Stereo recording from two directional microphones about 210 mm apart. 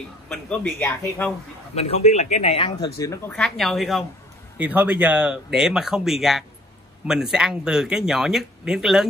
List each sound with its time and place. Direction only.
0.3 s a man's voice: 5° left (ahead or behind)
1.8 s speech: 30° left (ahead or behind); by 9.0 s centre (ahead or behind)